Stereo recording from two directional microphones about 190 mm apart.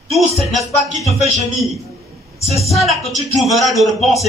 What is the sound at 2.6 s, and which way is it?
Speech, 35° left (ahead or behind).